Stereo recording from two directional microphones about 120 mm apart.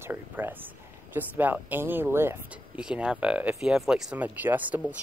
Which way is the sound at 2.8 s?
5° right (ahead or behind).